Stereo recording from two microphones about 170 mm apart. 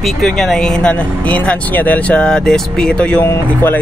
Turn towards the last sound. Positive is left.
turn(degrees=15)  # may be behind; listen again after turning